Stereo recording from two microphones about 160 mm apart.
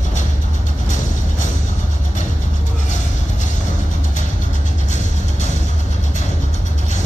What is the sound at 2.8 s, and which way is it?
Music, 50° left (ahead or behind).